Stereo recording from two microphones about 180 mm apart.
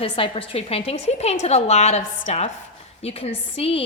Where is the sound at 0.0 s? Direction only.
30° left (ahead or behind).